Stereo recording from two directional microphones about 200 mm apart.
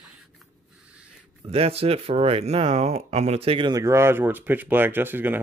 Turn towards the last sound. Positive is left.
turn(degrees=-10)  # may be behind; listen again after turning